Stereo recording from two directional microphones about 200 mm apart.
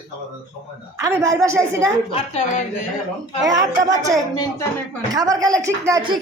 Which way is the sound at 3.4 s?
20° right (ahead or behind).